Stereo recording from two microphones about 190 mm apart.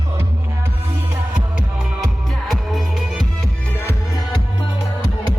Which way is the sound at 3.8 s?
10° left (ahead or behind).